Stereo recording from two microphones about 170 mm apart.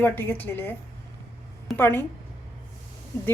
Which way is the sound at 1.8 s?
15° left (ahead or behind).